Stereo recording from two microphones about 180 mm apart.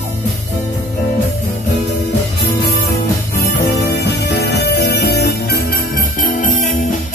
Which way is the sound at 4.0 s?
65° left (ahead or behind).